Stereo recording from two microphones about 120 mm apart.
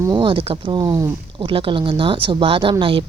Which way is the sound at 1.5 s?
45° right (ahead or behind).